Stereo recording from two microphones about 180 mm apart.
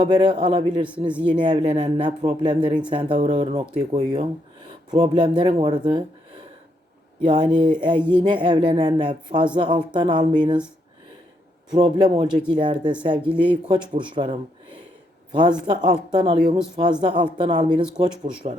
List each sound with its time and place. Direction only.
0.0 s speech: 25° right (ahead or behind)
0.9 s speech: 5° right (ahead or behind)
1.4 s speech: 30° right (ahead or behind)
7.3 s speech: 25° right (ahead or behind)
11.7 s a man's voice: 25° right (ahead or behind)